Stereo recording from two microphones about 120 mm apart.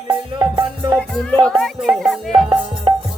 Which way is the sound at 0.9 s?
10° left (ahead or behind).